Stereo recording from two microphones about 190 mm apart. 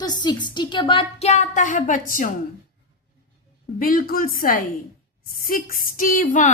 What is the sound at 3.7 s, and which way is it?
A woman's voice, 50° left (ahead or behind).